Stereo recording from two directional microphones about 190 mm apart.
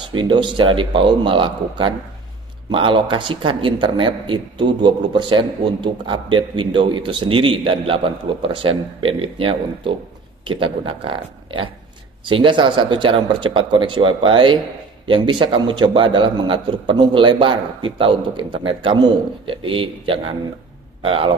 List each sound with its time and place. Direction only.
0.1 s a man's voice: 25° right (ahead or behind)